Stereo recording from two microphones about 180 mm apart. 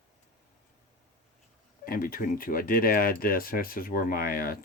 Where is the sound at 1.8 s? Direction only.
55° left (ahead or behind).